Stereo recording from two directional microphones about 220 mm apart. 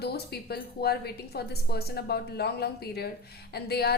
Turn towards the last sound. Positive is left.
turn(degrees=45)  # may be behind; listen again after turning